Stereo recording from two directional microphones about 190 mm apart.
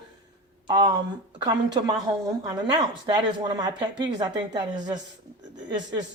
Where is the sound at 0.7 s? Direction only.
20° right (ahead or behind).